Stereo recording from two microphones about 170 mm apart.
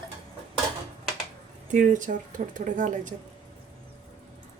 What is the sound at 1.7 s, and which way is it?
A woman's voice, 50° right (ahead or behind).